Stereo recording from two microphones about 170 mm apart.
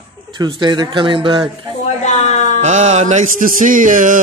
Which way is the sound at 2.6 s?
45° right (ahead or behind).